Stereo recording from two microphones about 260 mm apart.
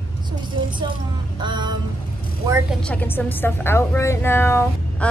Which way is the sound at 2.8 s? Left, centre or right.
Centre.